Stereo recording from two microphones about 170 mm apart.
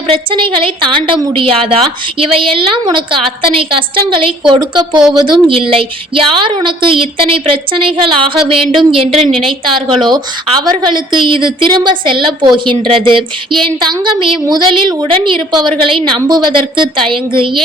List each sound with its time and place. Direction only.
0.1 s a woman's voice: 30° right (ahead or behind)